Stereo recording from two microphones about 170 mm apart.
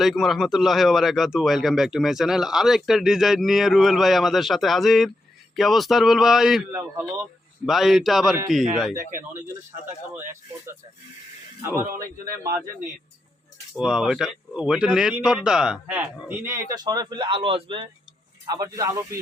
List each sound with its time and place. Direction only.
0.0 s speech: centre (ahead or behind)
11.6 s speech: 15° right (ahead or behind)
13.7 s speech: 5° right (ahead or behind)
16.7 s speech: 25° right (ahead or behind)
18.4 s speech: 20° right (ahead or behind)